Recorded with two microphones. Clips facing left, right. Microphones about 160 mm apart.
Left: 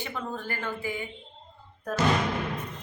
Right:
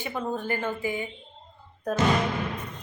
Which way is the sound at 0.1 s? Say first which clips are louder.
Right 5 dB; 20° right (ahead or behind).